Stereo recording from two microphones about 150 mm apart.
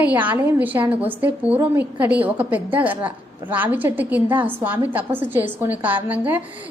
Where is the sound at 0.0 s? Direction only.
10° right (ahead or behind).